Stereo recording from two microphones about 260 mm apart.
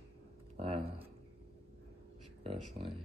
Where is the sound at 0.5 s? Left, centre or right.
Right.